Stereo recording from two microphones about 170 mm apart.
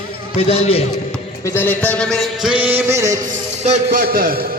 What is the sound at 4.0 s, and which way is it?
Speech, 60° right (ahead or behind).